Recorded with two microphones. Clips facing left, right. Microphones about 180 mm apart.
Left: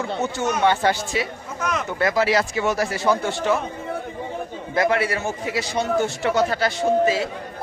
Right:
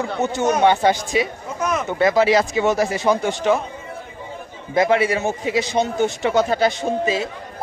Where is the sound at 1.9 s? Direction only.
20° right (ahead or behind).